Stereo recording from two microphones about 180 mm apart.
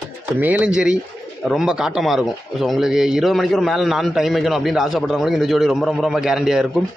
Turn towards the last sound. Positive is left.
turn(degrees=0)  # may be behind; listen again after turning